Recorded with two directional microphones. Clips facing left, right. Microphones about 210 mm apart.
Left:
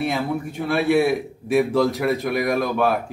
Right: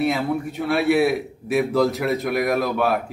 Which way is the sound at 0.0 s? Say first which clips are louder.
Right 2 dB; centre (ahead or behind).